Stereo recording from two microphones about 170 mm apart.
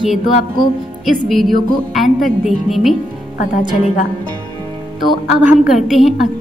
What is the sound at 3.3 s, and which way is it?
Speech, 50° left (ahead or behind).